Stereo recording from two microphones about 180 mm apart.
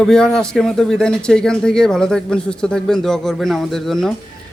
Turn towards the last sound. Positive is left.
turn(degrees=0)  # may be behind; listen again after turning